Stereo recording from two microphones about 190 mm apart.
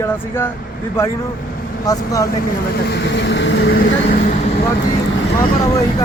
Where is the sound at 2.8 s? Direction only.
65° left (ahead or behind).